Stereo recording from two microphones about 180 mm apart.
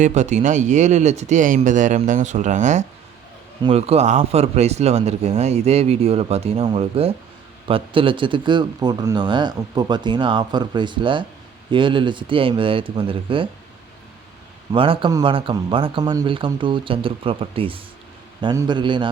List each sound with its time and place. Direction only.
0.0 s speech: 40° right (ahead or behind)
3.6 s speech: 30° right (ahead or behind)
14.7 s speech: 30° right (ahead or behind)